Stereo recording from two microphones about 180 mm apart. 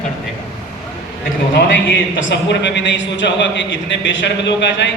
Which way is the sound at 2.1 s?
85° left.